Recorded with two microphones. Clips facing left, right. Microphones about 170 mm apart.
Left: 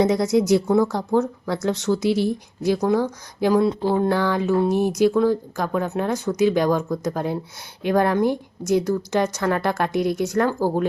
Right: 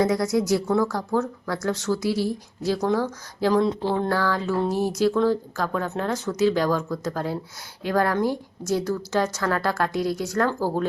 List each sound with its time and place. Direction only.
0.0 s a woman's voice: 20° left (ahead or behind)
4.1 s a woman's voice: 20° left (ahead or behind)